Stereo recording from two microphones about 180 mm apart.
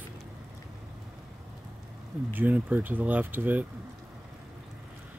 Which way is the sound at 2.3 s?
10° right (ahead or behind).